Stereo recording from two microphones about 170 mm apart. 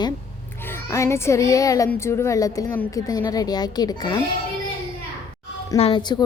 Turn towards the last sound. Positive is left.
turn(degrees=30)  # may be behind; listen again after turning